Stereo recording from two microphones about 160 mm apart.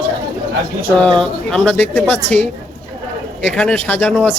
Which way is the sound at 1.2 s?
5° left (ahead or behind).